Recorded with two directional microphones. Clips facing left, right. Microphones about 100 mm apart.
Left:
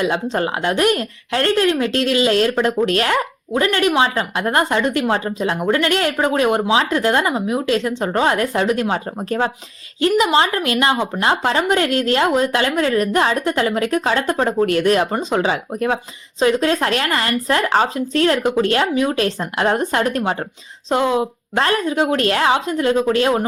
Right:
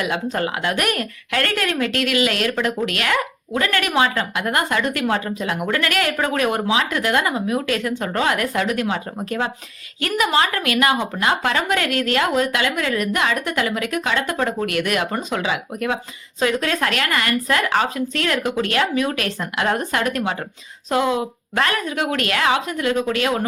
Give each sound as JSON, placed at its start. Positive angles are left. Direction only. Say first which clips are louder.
{"t": 0.0, "sound": "speech", "louder": "left 3 dB", "side_deg": 30}